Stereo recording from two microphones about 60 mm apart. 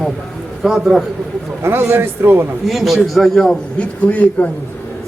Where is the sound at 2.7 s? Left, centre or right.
Centre.